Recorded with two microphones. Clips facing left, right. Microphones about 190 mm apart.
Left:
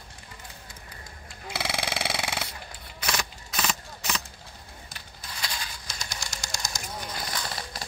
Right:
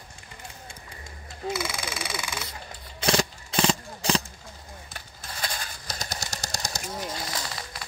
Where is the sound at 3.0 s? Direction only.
30° right (ahead or behind).